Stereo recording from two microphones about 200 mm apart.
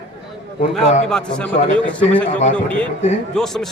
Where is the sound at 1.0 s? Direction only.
5° left (ahead or behind).